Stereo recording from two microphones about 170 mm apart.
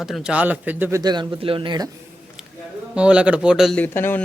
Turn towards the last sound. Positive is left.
turn(degrees=15)  # may be behind; listen again after turning